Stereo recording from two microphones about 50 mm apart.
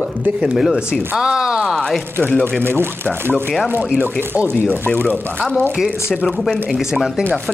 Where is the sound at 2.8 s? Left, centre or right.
Right.